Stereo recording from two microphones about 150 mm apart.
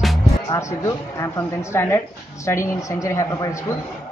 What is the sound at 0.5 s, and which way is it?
A woman's voice, 20° left (ahead or behind).